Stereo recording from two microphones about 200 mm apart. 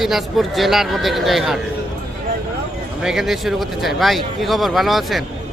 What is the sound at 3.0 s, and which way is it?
Speech, centre (ahead or behind).